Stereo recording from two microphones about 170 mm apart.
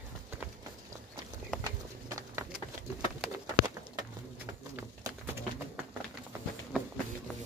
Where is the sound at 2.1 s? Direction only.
20° right (ahead or behind).